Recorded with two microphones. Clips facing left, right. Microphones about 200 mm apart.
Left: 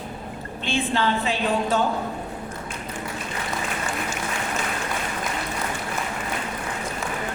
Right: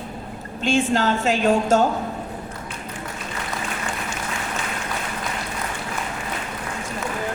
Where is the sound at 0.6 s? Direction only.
45° right (ahead or behind).